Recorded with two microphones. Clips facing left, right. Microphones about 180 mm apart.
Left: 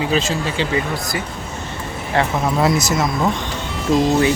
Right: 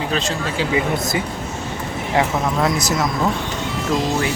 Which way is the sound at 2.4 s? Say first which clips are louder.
Left 2 dB; 5° left (ahead or behind).